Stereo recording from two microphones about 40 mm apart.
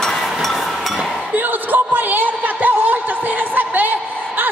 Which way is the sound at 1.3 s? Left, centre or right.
Right.